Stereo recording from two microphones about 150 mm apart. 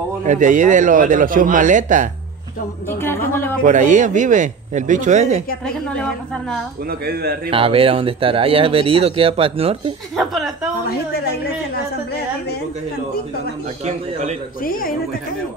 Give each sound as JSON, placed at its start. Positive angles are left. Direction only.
{"t": 0.2, "sound": "a man's voice", "side_deg": -55}
{"t": 2.9, "sound": "a woman's voice", "side_deg": 15}
{"t": 3.6, "sound": "a man's voice", "side_deg": -55}
{"t": 6.9, "sound": "a man's voice", "side_deg": -90}
{"t": 7.5, "sound": "speech", "side_deg": -35}
{"t": 10.1, "sound": "a woman's voice", "side_deg": 0}
{"t": 13.8, "sound": "a man's voice", "side_deg": -50}
{"t": 14.6, "sound": "a woman's voice", "side_deg": 70}